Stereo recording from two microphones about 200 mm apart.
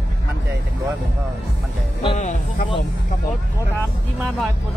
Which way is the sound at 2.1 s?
35° left (ahead or behind).